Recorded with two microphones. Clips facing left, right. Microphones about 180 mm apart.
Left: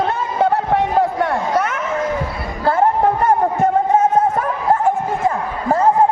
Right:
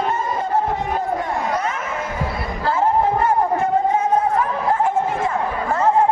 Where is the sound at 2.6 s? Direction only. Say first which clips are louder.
Left 4 dB; 60° left (ahead or behind).